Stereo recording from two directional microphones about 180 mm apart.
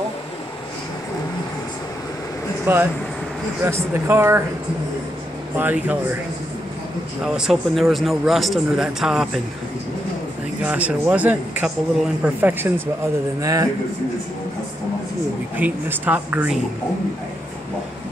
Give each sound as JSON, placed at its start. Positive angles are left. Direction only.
{"t": 2.6, "sound": "speech", "side_deg": -10}
{"t": 5.6, "sound": "speech", "side_deg": -10}
{"t": 7.3, "sound": "speech", "side_deg": 0}
{"t": 10.6, "sound": "speech", "side_deg": -10}
{"t": 15.5, "sound": "speech", "side_deg": -10}